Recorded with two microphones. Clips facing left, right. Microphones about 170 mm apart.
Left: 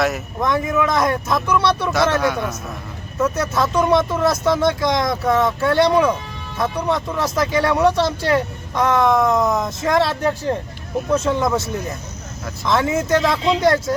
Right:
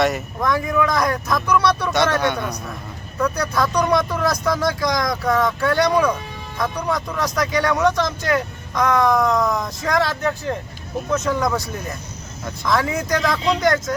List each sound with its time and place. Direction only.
0.0 s a man's voice: centre (ahead or behind)
0.4 s speech: 20° left (ahead or behind)
2.1 s a man's voice: centre (ahead or behind)
3.2 s speech: 25° left (ahead or behind)
7.2 s speech: 25° left (ahead or behind)
12.6 s speech: 25° left (ahead or behind)